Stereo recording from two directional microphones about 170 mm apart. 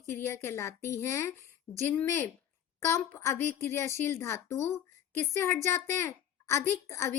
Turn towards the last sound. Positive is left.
turn(degrees=15)  # may be behind; listen again after turning